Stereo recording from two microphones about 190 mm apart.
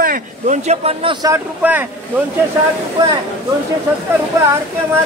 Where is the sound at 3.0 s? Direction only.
25° right (ahead or behind).